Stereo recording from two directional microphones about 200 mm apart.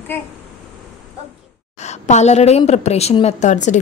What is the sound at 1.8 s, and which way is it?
A woman's voice, 35° left (ahead or behind).